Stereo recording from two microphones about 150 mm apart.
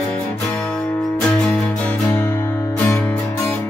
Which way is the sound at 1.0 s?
10° left (ahead or behind).